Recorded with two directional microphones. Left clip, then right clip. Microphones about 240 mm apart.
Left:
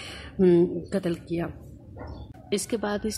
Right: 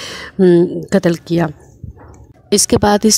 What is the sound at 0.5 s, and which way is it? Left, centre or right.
Speech, right.